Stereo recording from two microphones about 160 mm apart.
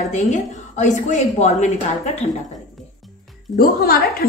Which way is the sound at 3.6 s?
70° left (ahead or behind).